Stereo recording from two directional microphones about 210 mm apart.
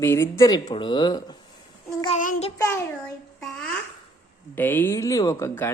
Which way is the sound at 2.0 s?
35° left (ahead or behind).